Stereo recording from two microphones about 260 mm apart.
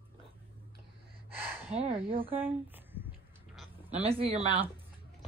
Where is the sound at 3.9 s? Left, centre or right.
Right.